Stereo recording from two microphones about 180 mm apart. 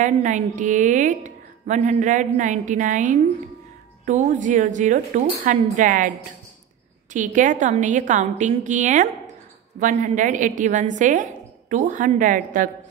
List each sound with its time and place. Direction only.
0.0 s a woman's voice: 45° right (ahead or behind)